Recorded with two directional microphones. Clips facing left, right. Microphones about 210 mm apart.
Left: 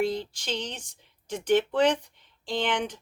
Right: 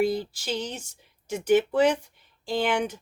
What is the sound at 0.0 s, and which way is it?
Speech, 10° right (ahead or behind).